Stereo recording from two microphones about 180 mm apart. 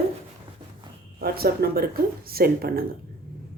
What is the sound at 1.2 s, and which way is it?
A woman's voice, 60° right (ahead or behind).